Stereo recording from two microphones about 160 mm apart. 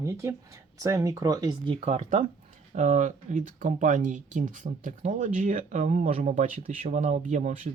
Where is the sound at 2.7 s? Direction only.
50° right (ahead or behind).